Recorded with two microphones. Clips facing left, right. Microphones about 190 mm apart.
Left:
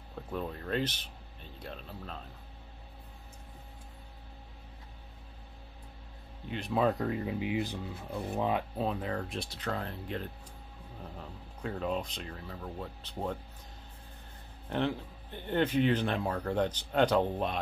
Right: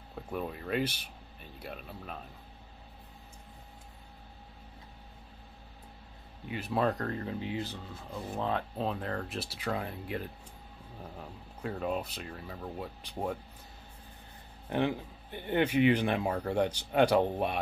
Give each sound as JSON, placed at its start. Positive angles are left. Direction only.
{"t": 0.3, "sound": "speech", "side_deg": -10}
{"t": 6.5, "sound": "speech", "side_deg": 0}
{"t": 11.6, "sound": "speech", "side_deg": -5}
{"t": 14.7, "sound": "speech", "side_deg": -10}